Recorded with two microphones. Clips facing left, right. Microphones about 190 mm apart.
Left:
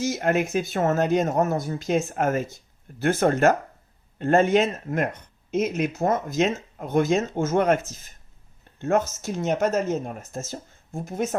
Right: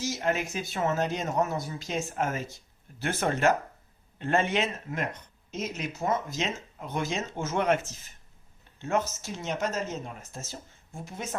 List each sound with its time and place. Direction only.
0.0 s speech: 55° left (ahead or behind)
5.5 s speech: 55° left (ahead or behind)
8.8 s speech: 50° left (ahead or behind)